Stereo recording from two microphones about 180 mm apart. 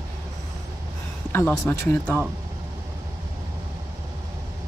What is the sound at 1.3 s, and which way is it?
Speech, 15° left (ahead or behind).